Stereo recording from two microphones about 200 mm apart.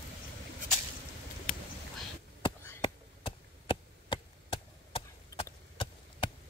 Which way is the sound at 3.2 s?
25° left (ahead or behind).